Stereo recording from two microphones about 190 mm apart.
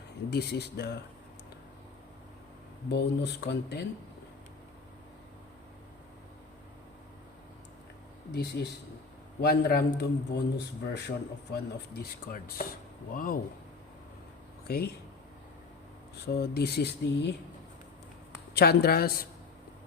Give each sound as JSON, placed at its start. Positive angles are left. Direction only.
{"t": 0.3, "sound": "a man's voice", "side_deg": 60}
{"t": 2.9, "sound": "a man's voice", "side_deg": 65}
{"t": 8.3, "sound": "a man's voice", "side_deg": 60}
{"t": 16.2, "sound": "a man's voice", "side_deg": 60}
{"t": 18.5, "sound": "speech", "side_deg": 55}